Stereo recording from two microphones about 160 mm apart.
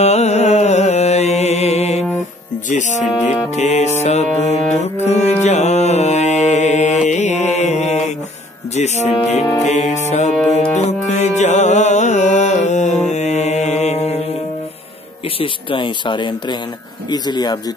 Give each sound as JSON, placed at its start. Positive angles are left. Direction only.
{"t": 0.0, "sound": "music", "side_deg": 45}
{"t": 8.7, "sound": "speech", "side_deg": 45}
{"t": 9.6, "sound": "music", "side_deg": 45}
{"t": 15.3, "sound": "speech", "side_deg": 30}